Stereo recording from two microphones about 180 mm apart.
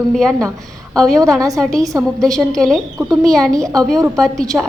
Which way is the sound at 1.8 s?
20° right (ahead or behind).